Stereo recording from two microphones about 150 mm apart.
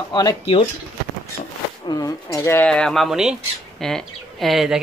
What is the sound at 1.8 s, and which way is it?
Speech, 25° left (ahead or behind).